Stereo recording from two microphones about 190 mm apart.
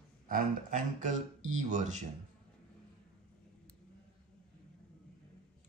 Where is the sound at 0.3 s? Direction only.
45° right (ahead or behind).